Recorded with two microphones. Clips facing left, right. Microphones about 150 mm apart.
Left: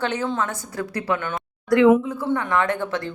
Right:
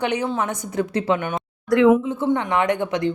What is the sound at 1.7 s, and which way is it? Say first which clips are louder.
Speech: even; centre (ahead or behind).